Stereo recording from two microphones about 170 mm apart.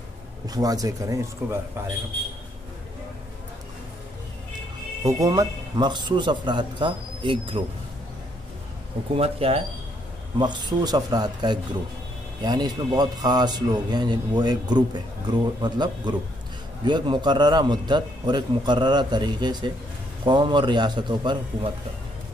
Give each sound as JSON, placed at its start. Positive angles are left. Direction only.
{"t": 0.5, "sound": "a man's voice", "side_deg": -20}
{"t": 5.0, "sound": "a man's voice", "side_deg": -20}
{"t": 9.1, "sound": "a man's voice", "side_deg": -35}